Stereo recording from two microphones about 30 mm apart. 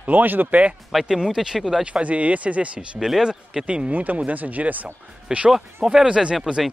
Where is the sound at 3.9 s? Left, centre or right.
Right.